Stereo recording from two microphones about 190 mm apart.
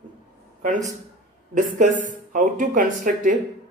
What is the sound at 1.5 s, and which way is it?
Speech, 40° right (ahead or behind).